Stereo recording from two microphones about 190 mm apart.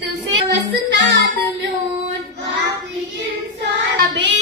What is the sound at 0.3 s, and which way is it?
Music, 70° right (ahead or behind).